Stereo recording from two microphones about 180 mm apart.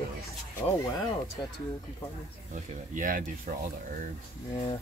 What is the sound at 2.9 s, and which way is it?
Speech, 45° right (ahead or behind).